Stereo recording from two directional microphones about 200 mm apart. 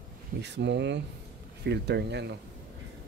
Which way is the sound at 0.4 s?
60° right (ahead or behind).